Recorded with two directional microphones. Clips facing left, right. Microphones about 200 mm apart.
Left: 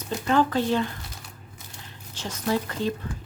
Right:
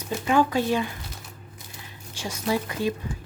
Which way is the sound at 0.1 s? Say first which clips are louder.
Right 1 dB; 10° right (ahead or behind).